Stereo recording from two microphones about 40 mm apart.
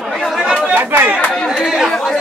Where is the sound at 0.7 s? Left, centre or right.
Right.